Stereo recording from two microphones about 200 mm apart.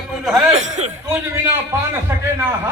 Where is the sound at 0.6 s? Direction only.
35° right (ahead or behind).